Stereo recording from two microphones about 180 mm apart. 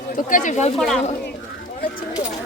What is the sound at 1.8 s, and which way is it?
Speech, 50° left (ahead or behind).